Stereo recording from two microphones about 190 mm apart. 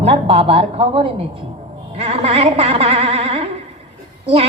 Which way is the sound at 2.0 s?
30° right (ahead or behind).